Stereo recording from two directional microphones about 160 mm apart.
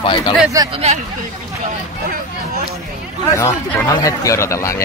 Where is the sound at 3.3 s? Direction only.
10° left (ahead or behind).